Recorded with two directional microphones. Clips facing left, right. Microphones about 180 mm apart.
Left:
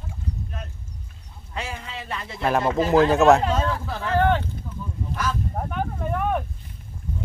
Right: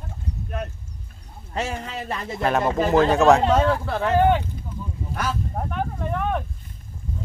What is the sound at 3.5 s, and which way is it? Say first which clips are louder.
Speech: right 5 dB; 65° right (ahead or behind).